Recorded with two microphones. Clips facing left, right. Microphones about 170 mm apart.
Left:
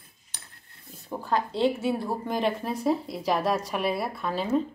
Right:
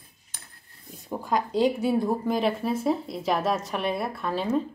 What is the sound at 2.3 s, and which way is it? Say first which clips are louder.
A woman's voice: right 2 dB; centre (ahead or behind).